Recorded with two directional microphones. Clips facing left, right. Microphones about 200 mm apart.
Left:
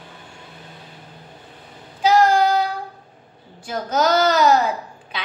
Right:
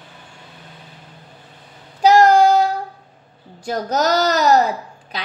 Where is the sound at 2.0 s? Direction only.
40° right (ahead or behind).